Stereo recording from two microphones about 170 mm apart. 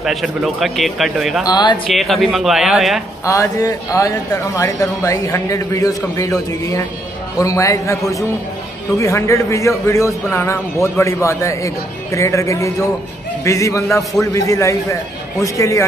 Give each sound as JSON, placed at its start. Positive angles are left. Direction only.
{"t": 0.0, "sound": "speech", "side_deg": 0}
{"t": 1.4, "sound": "speech", "side_deg": 25}
{"t": 1.9, "sound": "speech", "side_deg": 0}
{"t": 3.3, "sound": "a man's voice", "side_deg": 20}